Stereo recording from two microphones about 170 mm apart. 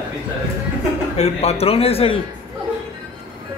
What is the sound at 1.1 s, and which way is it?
Speech, 40° left (ahead or behind).